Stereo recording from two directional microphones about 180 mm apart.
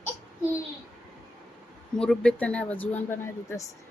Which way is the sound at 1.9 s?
5° left (ahead or behind).